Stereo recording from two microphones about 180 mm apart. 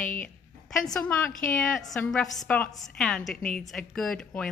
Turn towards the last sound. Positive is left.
turn(degrees=5)  # may be behind; listen again after turning